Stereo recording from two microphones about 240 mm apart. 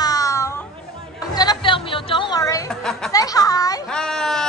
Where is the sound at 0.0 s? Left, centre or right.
Centre.